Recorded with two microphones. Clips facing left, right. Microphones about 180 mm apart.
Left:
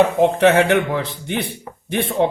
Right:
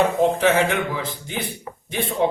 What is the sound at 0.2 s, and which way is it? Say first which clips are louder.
A man's voice: left 4 dB; 65° left (ahead or behind).